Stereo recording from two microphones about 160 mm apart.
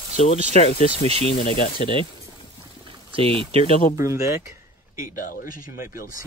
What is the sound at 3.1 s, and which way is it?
Speech, 35° right (ahead or behind).